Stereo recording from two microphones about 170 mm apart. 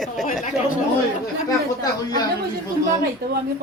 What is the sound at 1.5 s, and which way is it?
Speech, 20° left (ahead or behind).